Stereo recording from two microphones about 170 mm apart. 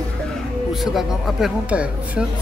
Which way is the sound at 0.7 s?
Centre (ahead or behind).